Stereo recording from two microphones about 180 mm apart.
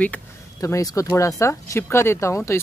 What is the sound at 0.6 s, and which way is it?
Speech, 20° left (ahead or behind).